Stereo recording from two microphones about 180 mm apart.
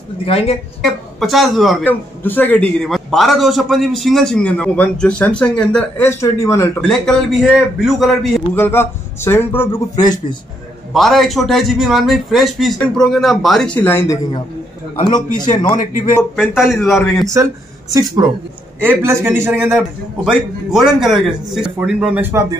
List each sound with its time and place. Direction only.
0.2 s speech: 30° left (ahead or behind)
0.8 s a man's voice: centre (ahead or behind)
1.9 s a man's voice: 10° left (ahead or behind)
6.8 s a man's voice: 5° left (ahead or behind)
8.5 s speech: 10° left (ahead or behind)
10.9 s a man's voice: centre (ahead or behind); by 15.2 s 20° left (ahead or behind)
15.8 s a man's voice: 45° left (ahead or behind)
16.3 s a man's voice: centre (ahead or behind)
17.9 s a man's voice: 20° right (ahead or behind)
20.2 s a man's voice: centre (ahead or behind)